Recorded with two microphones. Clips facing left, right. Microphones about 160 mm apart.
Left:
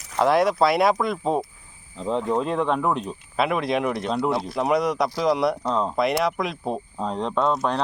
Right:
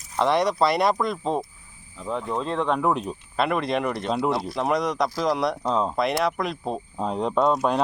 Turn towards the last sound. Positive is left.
turn(degrees=-10)  # may be behind; listen again after turning